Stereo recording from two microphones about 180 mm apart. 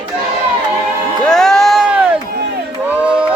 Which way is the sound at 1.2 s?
Centre (ahead or behind).